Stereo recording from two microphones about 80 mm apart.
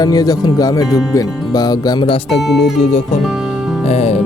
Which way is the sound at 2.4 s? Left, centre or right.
Centre.